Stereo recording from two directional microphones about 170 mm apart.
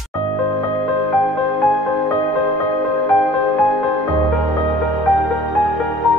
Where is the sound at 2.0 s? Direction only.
20° left (ahead or behind).